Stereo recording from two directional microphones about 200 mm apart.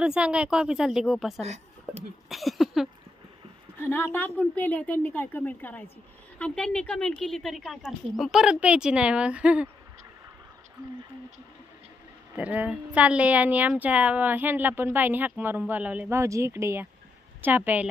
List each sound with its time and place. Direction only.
0.0 s speech: 5° right (ahead or behind)
1.4 s speech: 35° right (ahead or behind)
2.2 s a sound: centre (ahead or behind)
3.8 s a woman's voice: 10° left (ahead or behind); by 9.7 s 5° right (ahead or behind)
12.4 s a woman's voice: 5° right (ahead or behind)